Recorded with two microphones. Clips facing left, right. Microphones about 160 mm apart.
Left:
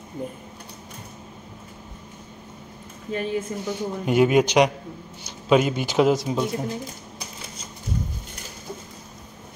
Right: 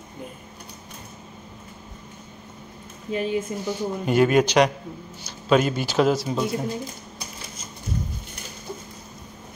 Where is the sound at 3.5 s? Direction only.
15° right (ahead or behind).